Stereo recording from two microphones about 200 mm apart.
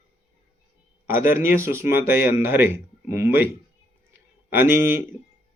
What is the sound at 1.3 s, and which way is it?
Speech, 10° right (ahead or behind).